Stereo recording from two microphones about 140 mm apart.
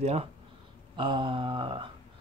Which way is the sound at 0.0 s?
45° right (ahead or behind).